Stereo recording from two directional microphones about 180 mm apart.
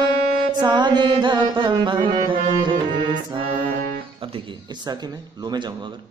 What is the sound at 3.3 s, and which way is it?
Music, 30° right (ahead or behind).